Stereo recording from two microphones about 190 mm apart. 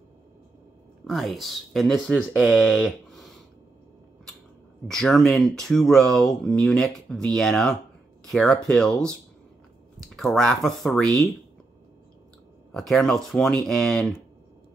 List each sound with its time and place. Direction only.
1.0 s speech: centre (ahead or behind)
4.8 s speech: centre (ahead or behind)
12.7 s speech: centre (ahead or behind)